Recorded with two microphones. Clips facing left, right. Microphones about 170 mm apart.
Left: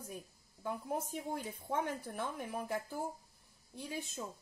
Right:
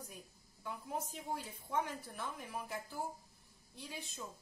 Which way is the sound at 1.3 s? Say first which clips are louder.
Even; 55° left (ahead or behind).